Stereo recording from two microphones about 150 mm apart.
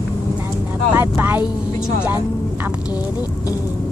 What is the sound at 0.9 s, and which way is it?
Speech, 15° right (ahead or behind).